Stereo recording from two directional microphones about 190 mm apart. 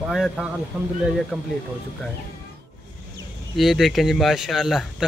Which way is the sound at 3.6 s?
Centre (ahead or behind).